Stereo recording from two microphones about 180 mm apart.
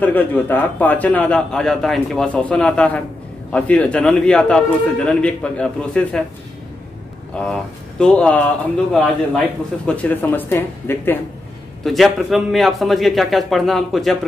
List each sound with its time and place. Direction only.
0.0 s a man's voice: 10° left (ahead or behind)
7.3 s a man's voice: 5° left (ahead or behind)
11.8 s a man's voice: centre (ahead or behind)